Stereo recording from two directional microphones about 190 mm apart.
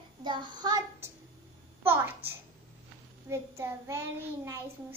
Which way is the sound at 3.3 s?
15° right (ahead or behind).